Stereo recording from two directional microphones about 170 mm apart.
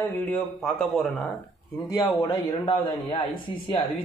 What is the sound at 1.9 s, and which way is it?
A man's voice, 25° left (ahead or behind).